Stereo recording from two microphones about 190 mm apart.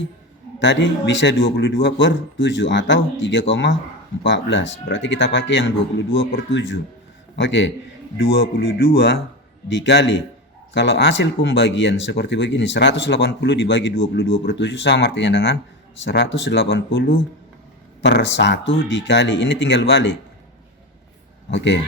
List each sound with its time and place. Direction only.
0.6 s speech: 70° left (ahead or behind); by 14.3 s 90° left
14.4 s speech: 70° left (ahead or behind)
18.0 s speech: 65° left (ahead or behind)
21.5 s speech: 70° left (ahead or behind)